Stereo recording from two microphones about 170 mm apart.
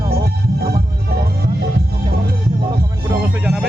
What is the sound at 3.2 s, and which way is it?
Music, 5° right (ahead or behind).